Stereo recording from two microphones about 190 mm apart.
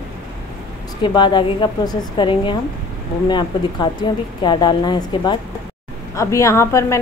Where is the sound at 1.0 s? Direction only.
25° left (ahead or behind).